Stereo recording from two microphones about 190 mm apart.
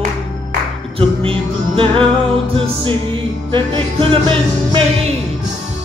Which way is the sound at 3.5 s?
25° right (ahead or behind).